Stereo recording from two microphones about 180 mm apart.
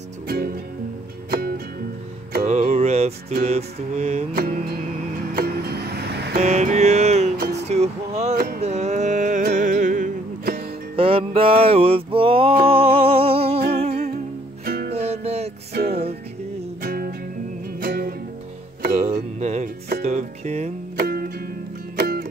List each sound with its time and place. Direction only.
2.4 s music: 35° right (ahead or behind)
3.4 s mantra: 35° right (ahead or behind)
4.3 s music: 55° right (ahead or behind)
6.3 s music: 35° right (ahead or behind)
7.3 s music: 55° right (ahead or behind)
7.6 s music: 40° right (ahead or behind)
11.0 s music: 30° right (ahead or behind)
14.6 s music: 60° right (ahead or behind)
15.0 s music: 35° right (ahead or behind)
15.7 s music: 60° right (ahead or behind)
18.9 s music: 40° right (ahead or behind)
20.9 s music: 55° right (ahead or behind)